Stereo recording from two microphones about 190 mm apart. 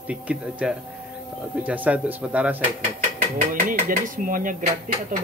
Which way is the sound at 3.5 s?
45° right (ahead or behind).